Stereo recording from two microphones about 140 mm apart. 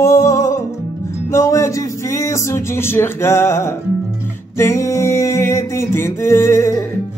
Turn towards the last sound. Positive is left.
turn(degrees=20)  # may be behind; listen again after turning